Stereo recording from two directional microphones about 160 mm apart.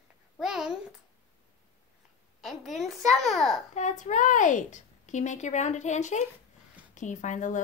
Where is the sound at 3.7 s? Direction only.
50° left (ahead or behind).